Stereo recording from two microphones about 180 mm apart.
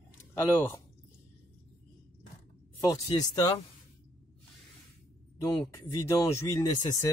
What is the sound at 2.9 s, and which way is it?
Speech, 20° left (ahead or behind).